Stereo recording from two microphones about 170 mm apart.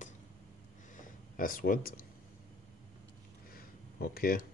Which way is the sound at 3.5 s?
60° left (ahead or behind).